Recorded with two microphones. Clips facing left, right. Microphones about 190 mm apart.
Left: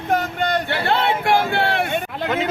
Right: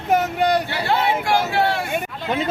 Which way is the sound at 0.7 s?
60° left (ahead or behind).